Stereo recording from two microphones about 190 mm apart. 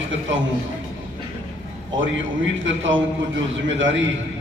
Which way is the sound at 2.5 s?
75° right (ahead or behind).